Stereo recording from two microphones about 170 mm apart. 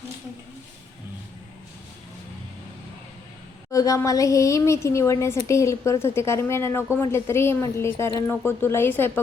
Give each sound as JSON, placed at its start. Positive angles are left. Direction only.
{"t": 3.7, "sound": "a woman's voice", "side_deg": 20}